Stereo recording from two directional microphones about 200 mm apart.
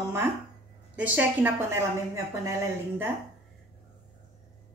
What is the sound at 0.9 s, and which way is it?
A woman's voice, 10° right (ahead or behind).